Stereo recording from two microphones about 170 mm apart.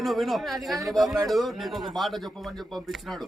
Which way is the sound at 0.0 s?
Centre (ahead or behind).